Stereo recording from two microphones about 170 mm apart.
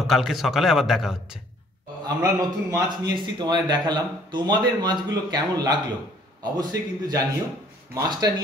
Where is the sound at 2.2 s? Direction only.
20° right (ahead or behind).